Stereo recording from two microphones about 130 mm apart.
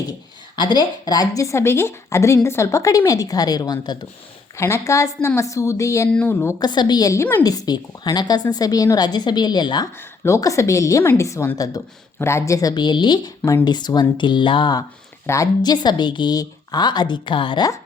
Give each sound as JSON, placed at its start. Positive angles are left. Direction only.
{"t": 0.5, "sound": "a woman's voice", "side_deg": 35}
{"t": 4.5, "sound": "a woman's voice", "side_deg": 20}
{"t": 6.6, "sound": "a woman's voice", "side_deg": 35}
{"t": 7.4, "sound": "a woman's voice", "side_deg": 30}
{"t": 10.0, "sound": "a woman's voice", "side_deg": 20}